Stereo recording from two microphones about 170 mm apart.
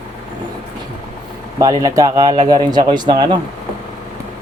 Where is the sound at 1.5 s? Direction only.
20° right (ahead or behind).